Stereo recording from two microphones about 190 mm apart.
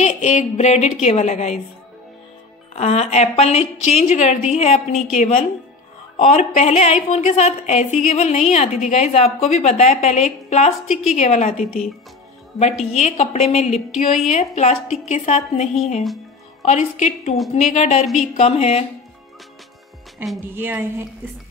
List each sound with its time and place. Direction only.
0.0 s a woman's voice: 35° left (ahead or behind)
2.7 s a woman's voice: 35° left (ahead or behind)
12.9 s a woman's voice: 35° left (ahead or behind)
20.2 s a woman's voice: 10° right (ahead or behind)